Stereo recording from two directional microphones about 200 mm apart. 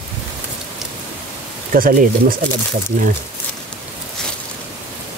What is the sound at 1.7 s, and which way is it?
Speech, 45° right (ahead or behind).